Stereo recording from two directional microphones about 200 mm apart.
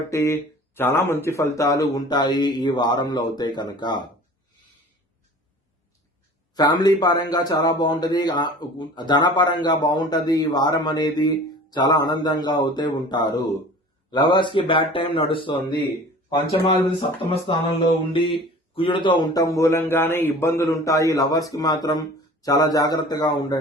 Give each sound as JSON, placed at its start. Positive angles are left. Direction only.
{"t": 0.1, "sound": "speech", "side_deg": 15}
{"t": 6.5, "sound": "speech", "side_deg": 20}